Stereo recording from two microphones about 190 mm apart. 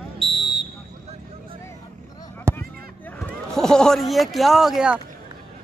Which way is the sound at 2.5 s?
15° right (ahead or behind).